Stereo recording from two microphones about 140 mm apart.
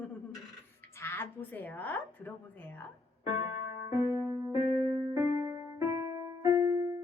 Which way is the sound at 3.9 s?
15° right (ahead or behind).